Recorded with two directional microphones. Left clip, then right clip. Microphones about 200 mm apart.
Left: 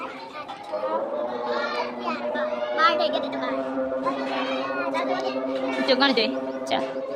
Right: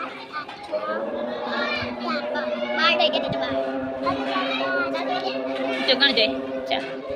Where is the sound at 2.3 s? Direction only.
25° left (ahead or behind).